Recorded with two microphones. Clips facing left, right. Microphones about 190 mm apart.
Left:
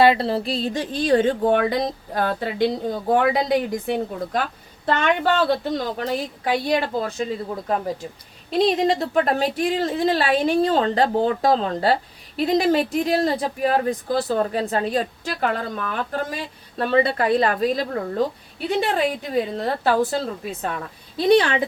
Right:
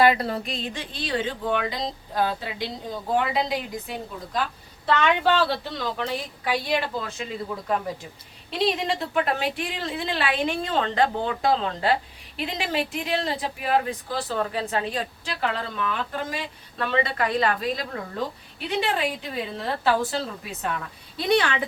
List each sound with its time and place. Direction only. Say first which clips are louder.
0.0 s speech: left 3 dB; 30° left (ahead or behind); by 7.3 s 45° left (ahead or behind)
8.4 s speech: left 6 dB; 40° left (ahead or behind)